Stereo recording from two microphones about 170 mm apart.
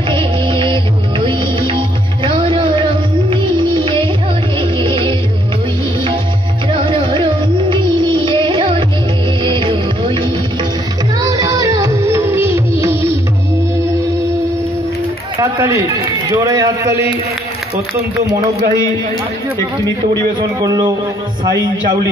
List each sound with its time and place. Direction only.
0.1 s music: 30° right (ahead or behind)
6.7 s music: 30° right (ahead or behind); by 13.0 s 15° right (ahead or behind)
15.4 s a man's voice: 20° right (ahead or behind)
18.3 s speech: 25° right (ahead or behind)
20.6 s speech: 25° right (ahead or behind)